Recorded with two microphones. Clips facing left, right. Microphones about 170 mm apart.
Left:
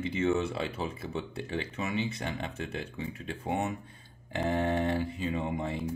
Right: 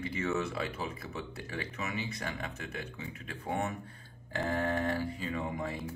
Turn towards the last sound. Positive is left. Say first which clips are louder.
# left 3 dB
turn(degrees=25)  # may be behind; listen again after turning